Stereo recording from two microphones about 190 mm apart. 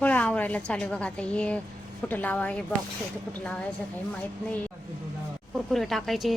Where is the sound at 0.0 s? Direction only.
10° left (ahead or behind).